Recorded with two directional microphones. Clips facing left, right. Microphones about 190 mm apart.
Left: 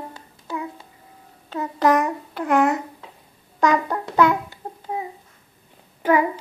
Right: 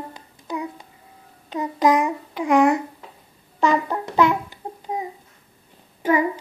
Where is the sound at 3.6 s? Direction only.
10° right (ahead or behind).